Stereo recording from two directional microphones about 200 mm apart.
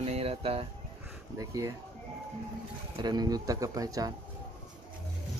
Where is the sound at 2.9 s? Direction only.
20° right (ahead or behind).